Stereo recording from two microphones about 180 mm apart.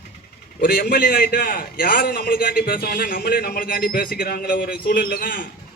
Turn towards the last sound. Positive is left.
turn(degrees=50)  # may be behind; listen again after turning